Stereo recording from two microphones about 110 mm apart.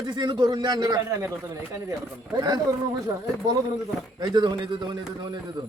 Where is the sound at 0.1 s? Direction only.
40° right (ahead or behind).